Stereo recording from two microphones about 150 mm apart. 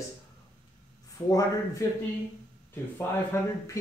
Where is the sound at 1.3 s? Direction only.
25° left (ahead or behind).